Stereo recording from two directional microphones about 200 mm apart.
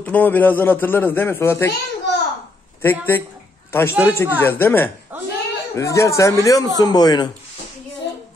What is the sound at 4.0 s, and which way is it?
A man's voice, 10° left (ahead or behind).